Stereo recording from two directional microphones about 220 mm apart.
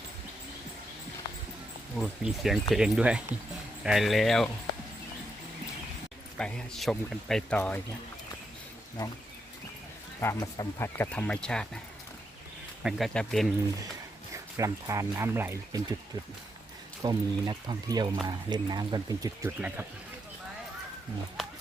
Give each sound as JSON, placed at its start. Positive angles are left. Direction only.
{"t": 2.0, "sound": "speech", "side_deg": 0}
{"t": 6.3, "sound": "speech", "side_deg": 5}
{"t": 10.2, "sound": "speech", "side_deg": 15}
{"t": 12.8, "sound": "speech", "side_deg": 0}
{"t": 14.3, "sound": "speech", "side_deg": -15}
{"t": 17.0, "sound": "speech", "side_deg": -15}